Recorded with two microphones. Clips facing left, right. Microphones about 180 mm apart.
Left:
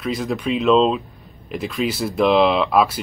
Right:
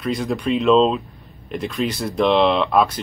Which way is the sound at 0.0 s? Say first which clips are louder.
Right 1 dB; centre (ahead or behind).